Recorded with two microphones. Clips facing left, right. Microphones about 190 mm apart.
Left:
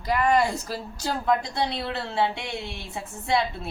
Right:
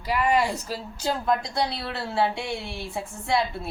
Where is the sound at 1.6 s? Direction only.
20° left (ahead or behind).